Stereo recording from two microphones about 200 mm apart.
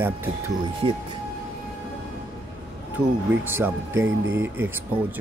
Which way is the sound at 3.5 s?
10° right (ahead or behind).